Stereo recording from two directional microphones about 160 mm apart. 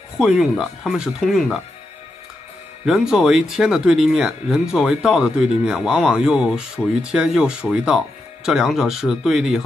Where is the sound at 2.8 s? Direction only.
Centre (ahead or behind).